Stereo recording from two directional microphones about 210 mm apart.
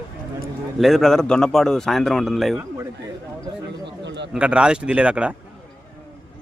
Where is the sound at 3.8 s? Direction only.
55° right (ahead or behind).